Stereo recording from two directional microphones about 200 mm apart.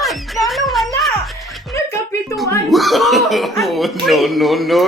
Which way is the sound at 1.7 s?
15° left (ahead or behind).